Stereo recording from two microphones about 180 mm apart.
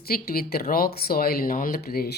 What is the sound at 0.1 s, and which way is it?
Speech, 55° left (ahead or behind).